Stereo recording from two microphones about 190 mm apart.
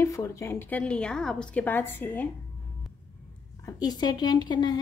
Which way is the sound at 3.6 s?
20° left (ahead or behind).